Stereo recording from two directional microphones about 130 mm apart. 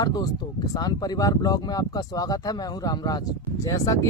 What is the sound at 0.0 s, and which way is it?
Speech, 30° left (ahead or behind).